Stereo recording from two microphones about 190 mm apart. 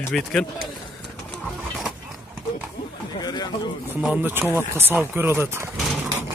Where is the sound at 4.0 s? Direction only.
10° right (ahead or behind).